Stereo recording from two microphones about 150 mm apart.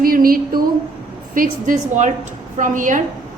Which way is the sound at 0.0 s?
75° right (ahead or behind).